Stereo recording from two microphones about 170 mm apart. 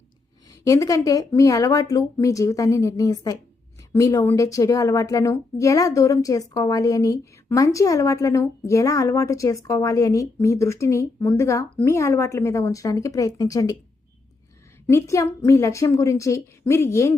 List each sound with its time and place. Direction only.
0.6 s a woman's voice: 20° left (ahead or behind)
14.8 s a woman's voice: 15° left (ahead or behind)